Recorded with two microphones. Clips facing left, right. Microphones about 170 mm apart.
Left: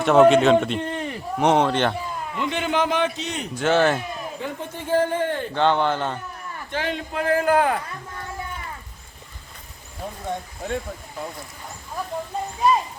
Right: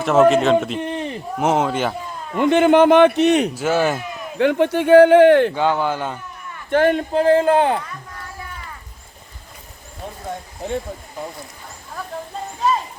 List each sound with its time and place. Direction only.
0.0 s a man's voice: centre (ahead or behind)
0.8 s a sound: 20° right (ahead or behind)
1.4 s a man's voice: 5° right (ahead or behind)
2.3 s a man's voice: 55° right (ahead or behind)
3.5 s speech: 5° right (ahead or behind)
4.4 s a man's voice: 80° right
5.5 s speech: 5° right (ahead or behind)
6.7 s speech: 55° right (ahead or behind)
7.1 s speech: 30° right (ahead or behind)